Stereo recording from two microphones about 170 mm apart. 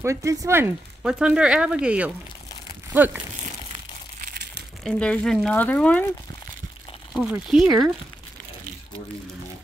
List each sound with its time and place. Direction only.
0.0 s speech: 20° right (ahead or behind)
4.2 s crushing: 75° right (ahead or behind)
4.8 s speech: 5° left (ahead or behind)
7.2 s speech: centre (ahead or behind)